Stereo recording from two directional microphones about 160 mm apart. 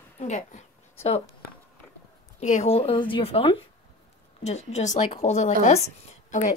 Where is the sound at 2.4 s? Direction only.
45° left (ahead or behind).